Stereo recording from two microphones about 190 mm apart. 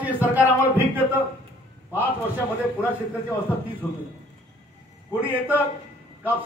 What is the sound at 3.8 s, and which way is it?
Speech, 15° left (ahead or behind).